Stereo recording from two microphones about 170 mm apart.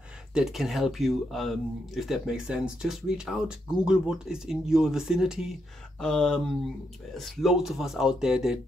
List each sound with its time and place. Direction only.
0.3 s speech: 5° right (ahead or behind)